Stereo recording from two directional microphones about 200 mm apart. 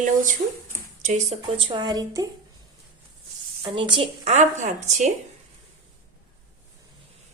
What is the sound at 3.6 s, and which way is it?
A woman's voice, 25° right (ahead or behind).